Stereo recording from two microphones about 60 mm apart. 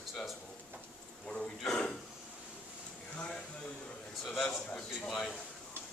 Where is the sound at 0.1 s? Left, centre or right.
Centre.